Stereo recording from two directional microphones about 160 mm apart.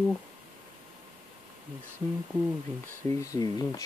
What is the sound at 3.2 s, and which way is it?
Speech, 20° left (ahead or behind).